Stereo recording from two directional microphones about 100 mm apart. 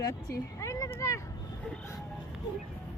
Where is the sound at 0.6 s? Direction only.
30° left (ahead or behind).